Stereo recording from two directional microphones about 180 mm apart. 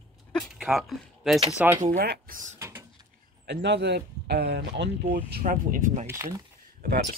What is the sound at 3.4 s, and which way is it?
Speech, 65° right (ahead or behind).